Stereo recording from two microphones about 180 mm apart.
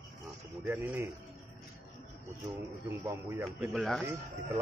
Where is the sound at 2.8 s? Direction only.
10° right (ahead or behind).